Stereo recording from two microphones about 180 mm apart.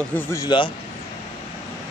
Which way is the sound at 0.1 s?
15° left (ahead or behind).